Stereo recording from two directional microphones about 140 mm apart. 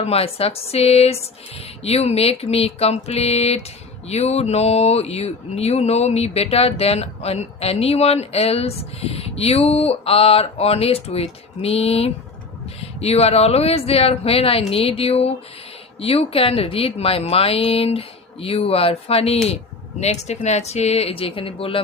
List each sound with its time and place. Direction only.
0.0 s speech: 45° left (ahead or behind)